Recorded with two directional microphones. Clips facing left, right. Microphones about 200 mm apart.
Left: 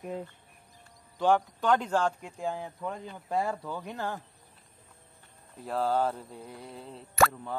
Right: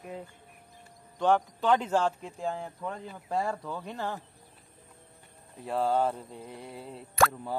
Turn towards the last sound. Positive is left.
turn(degrees=-5)  # may be behind; listen again after turning